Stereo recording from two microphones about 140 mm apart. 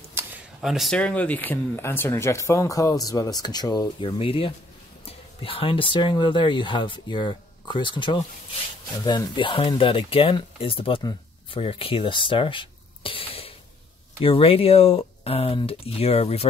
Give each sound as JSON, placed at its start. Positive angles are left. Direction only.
{"t": 0.2, "sound": "a sound", "side_deg": -15}
{"t": 0.6, "sound": "speech", "side_deg": 0}
{"t": 0.9, "sound": "speech", "side_deg": 10}